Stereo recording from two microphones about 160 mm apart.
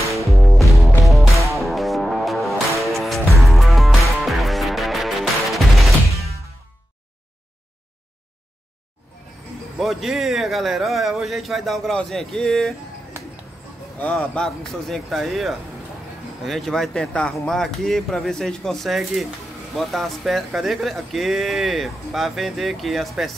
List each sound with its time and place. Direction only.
0.2 s music: centre (ahead or behind)
9.8 s speech: centre (ahead or behind)
13.9 s speech: 10° left (ahead or behind)